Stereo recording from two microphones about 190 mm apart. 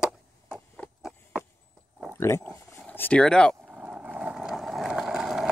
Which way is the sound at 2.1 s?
15° left (ahead or behind).